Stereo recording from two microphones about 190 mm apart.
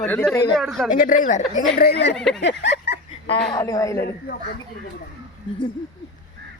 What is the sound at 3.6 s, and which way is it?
Speech, 15° left (ahead or behind).